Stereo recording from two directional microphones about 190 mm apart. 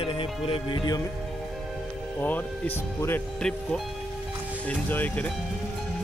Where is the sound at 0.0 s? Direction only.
30° left (ahead or behind).